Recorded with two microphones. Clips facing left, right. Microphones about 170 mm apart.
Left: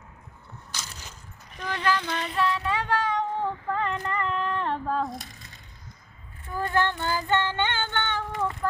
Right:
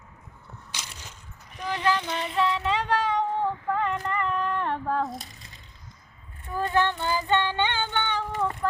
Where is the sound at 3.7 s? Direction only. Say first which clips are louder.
Right 2 dB; 5° right (ahead or behind).